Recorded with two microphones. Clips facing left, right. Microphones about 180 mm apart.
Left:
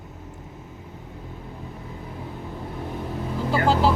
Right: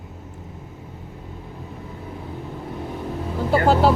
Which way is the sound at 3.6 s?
55° right (ahead or behind).